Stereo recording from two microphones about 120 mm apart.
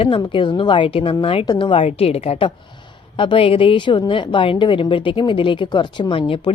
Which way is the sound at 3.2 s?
45° left (ahead or behind).